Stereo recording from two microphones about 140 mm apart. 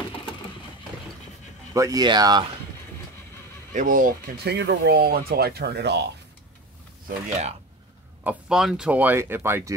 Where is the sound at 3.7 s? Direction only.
70° right (ahead or behind).